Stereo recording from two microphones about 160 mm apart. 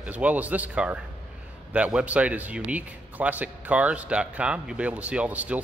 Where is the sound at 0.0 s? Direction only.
10° right (ahead or behind).